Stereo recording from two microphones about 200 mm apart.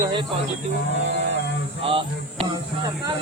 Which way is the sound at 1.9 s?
25° right (ahead or behind).